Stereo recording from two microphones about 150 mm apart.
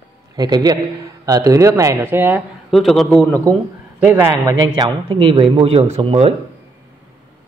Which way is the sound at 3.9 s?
15° right (ahead or behind).